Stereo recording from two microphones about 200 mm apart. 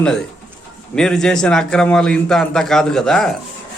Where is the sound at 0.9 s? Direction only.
Centre (ahead or behind).